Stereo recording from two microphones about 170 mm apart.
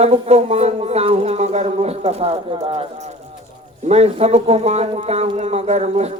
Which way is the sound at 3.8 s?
40° right (ahead or behind).